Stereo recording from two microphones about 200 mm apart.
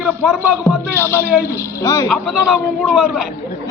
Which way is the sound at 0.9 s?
10° left (ahead or behind).